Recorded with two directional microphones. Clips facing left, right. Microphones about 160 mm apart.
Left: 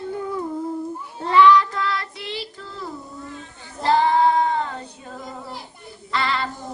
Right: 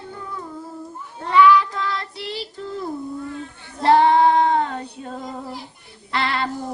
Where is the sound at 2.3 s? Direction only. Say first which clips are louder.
Right 3 dB; 40° right (ahead or behind).